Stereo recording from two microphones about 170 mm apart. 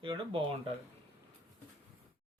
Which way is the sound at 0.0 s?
30° right (ahead or behind).